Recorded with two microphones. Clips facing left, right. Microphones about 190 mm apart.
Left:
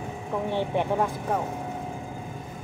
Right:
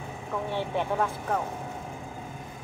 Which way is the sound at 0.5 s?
15° left (ahead or behind).